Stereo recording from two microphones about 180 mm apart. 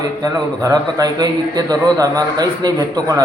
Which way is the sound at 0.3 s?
20° right (ahead or behind).